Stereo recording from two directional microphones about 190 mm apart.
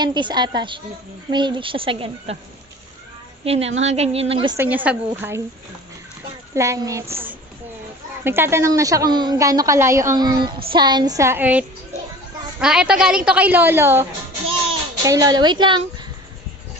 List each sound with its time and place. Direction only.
0.0 s speech: 25° right (ahead or behind)
3.4 s a woman's voice: 30° right (ahead or behind)
4.5 s a woman's voice: 10° right (ahead or behind)
6.5 s a woman's voice: 15° right (ahead or behind)